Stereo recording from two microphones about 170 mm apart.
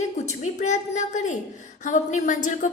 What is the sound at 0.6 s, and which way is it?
A woman's voice, 45° left (ahead or behind).